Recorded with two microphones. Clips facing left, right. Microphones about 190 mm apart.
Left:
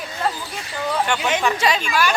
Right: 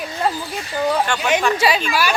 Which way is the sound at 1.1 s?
20° left (ahead or behind).